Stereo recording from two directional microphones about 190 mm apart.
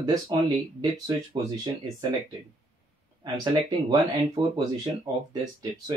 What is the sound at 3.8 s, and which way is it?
Speech, 20° right (ahead or behind).